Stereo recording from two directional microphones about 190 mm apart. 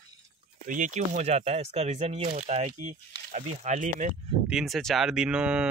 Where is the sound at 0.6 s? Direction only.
40° right (ahead or behind).